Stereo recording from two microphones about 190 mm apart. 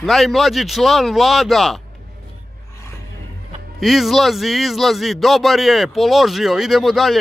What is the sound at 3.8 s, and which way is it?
Speech, centre (ahead or behind).